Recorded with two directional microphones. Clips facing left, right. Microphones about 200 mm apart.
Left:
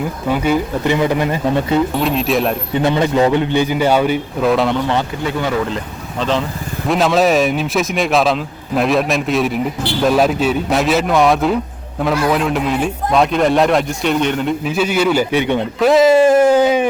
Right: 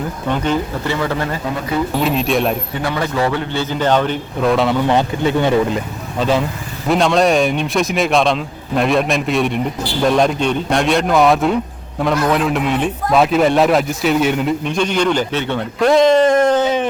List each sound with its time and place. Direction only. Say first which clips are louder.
0.3 s a man's voice: left 2 dB; 10° left (ahead or behind)
2.0 s a man's voice: even; centre (ahead or behind)
2.7 s a man's voice: left 5 dB; 20° left (ahead or behind); by 4.8 s centre (ahead or behind)
4.9 s speech: right 3 dB; 20° right (ahead or behind)
5.7 s speech: right 2 dB; 10° right (ahead or behind)
6.8 s a man's voice: even; centre (ahead or behind)
14.6 s a man's voice: left 1 dB; 5° left (ahead or behind)
15.8 s a man's voice: left 1 dB; 5° left (ahead or behind)